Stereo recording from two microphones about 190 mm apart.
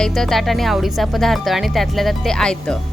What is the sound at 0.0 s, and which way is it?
Speech, centre (ahead or behind).